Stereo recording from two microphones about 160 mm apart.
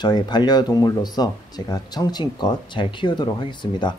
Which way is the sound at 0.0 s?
25° left (ahead or behind).